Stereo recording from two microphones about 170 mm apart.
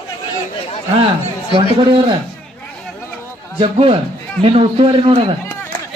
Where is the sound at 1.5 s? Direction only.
30° right (ahead or behind).